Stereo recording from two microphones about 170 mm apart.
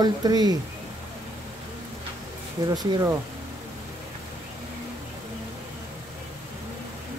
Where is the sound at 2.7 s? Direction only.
20° right (ahead or behind).